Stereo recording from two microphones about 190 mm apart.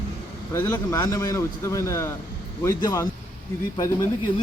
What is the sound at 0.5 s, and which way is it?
A man's voice, 15° left (ahead or behind).